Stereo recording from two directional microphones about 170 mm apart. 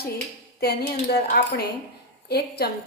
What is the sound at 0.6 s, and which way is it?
A woman's voice, 70° left (ahead or behind).